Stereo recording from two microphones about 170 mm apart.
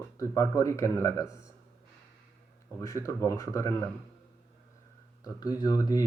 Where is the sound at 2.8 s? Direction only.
20° left (ahead or behind).